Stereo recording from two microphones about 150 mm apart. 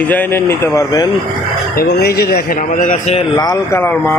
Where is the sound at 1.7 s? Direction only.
90° left; by 3.2 s 55° left (ahead or behind).